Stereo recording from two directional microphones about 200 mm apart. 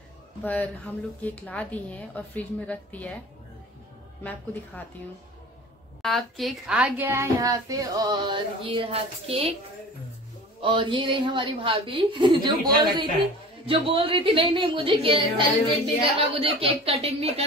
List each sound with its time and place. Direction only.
0.4 s speech: 10° left (ahead or behind)
4.2 s speech: 10° left (ahead or behind)
6.0 s speech: centre (ahead or behind); by 9.6 s 30° right (ahead or behind)
10.6 s a woman's voice: 25° right (ahead or behind)